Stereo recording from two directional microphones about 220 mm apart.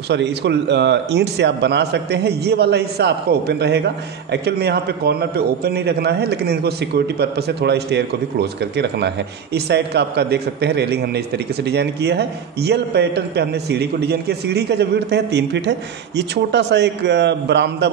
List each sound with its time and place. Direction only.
0.1 s a man's voice: 50° right (ahead or behind)